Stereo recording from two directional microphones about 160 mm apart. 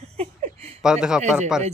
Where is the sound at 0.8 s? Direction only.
5° right (ahead or behind).